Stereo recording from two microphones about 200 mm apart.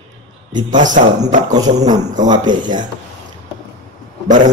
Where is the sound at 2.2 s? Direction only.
20° right (ahead or behind).